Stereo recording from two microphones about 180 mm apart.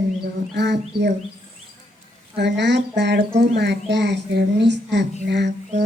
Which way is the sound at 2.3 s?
70° right (ahead or behind).